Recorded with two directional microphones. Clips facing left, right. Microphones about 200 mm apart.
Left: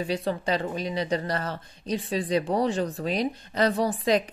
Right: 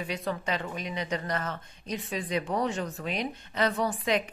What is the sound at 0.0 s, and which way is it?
Speech, 30° left (ahead or behind).